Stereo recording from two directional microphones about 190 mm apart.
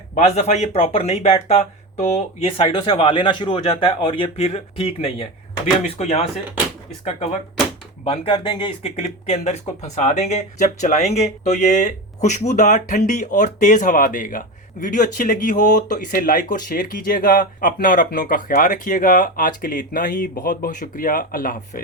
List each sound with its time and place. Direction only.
0.1 s speech: 40° left (ahead or behind)
8.0 s speech: 30° left (ahead or behind); by 21.8 s 45° left (ahead or behind)